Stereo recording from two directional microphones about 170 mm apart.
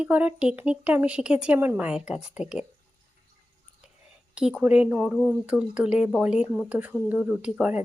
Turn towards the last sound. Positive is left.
turn(degrees=-10)  # may be behind; listen again after turning